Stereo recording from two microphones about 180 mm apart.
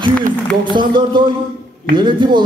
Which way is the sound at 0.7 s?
25° right (ahead or behind).